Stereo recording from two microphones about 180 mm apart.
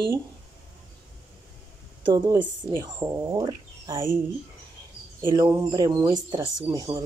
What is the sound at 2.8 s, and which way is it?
Speech, 15° right (ahead or behind).